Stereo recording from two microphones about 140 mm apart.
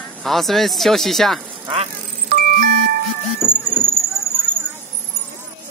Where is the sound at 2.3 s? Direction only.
80° right.